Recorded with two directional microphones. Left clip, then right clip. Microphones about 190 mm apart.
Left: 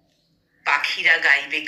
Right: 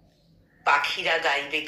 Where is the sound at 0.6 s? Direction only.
10° right (ahead or behind).